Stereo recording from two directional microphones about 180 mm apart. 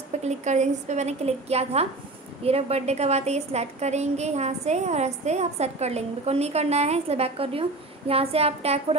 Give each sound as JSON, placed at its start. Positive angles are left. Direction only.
{"t": 0.2, "sound": "a woman's voice", "side_deg": -40}